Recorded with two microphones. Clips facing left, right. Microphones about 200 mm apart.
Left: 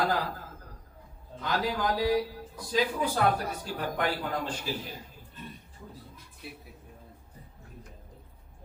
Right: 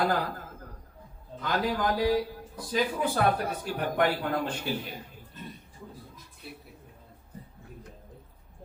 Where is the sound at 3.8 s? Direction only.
60° right (ahead or behind).